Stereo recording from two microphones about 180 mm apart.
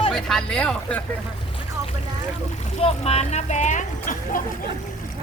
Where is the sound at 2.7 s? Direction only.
35° left (ahead or behind).